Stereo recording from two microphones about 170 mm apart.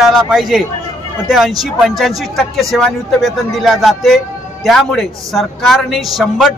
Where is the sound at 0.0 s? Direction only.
Centre (ahead or behind).